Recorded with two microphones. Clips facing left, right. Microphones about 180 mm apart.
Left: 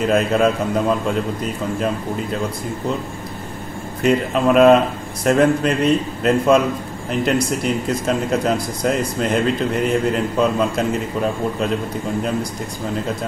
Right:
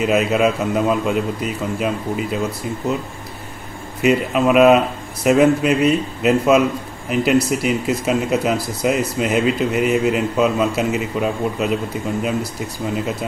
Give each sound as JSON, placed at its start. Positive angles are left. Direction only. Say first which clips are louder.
{"t": 0.0, "sound": "a man's voice", "louder": "even", "side_deg": -5}
{"t": 4.0, "sound": "a man's voice", "louder": "right 1 dB", "side_deg": -5}